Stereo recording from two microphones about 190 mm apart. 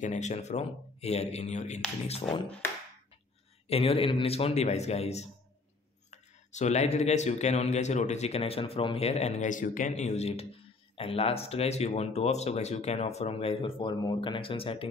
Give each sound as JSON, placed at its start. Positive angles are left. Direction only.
{"t": 0.0, "sound": "speech", "side_deg": 40}
{"t": 2.2, "sound": "speech", "side_deg": 25}
{"t": 3.6, "sound": "speech", "side_deg": 30}